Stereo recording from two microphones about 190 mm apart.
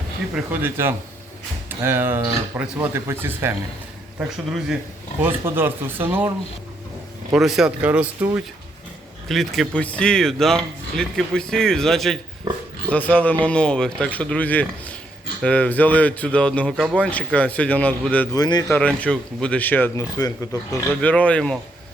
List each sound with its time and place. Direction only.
0.3 s speech: 10° right (ahead or behind)
7.3 s speech: centre (ahead or behind)
18.3 s speech: 20° left (ahead or behind)
18.8 s speech: 5° left (ahead or behind)
21.0 s speech: 5° left (ahead or behind)